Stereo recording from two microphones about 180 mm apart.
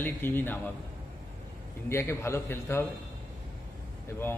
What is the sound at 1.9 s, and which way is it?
Speech, 15° left (ahead or behind).